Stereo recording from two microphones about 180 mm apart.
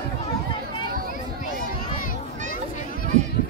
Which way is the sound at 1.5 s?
50° left (ahead or behind).